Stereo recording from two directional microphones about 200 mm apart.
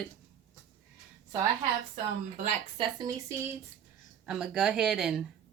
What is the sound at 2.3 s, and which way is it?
Speech, 35° right (ahead or behind).